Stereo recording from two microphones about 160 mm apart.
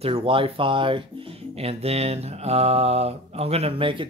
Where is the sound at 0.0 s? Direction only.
35° right (ahead or behind).